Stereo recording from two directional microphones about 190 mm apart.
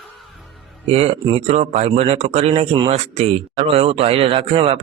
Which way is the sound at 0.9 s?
35° right (ahead or behind).